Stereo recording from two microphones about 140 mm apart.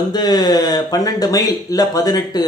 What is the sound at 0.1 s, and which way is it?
Speech, 30° left (ahead or behind).